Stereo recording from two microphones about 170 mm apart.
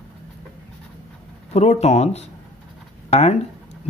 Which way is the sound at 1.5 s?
40° left (ahead or behind).